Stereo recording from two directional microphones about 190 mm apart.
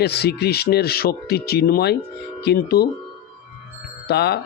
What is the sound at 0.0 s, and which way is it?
Speech, 60° left (ahead or behind).